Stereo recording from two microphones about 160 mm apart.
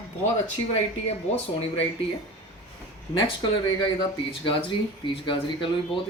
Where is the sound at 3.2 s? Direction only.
30° left (ahead or behind).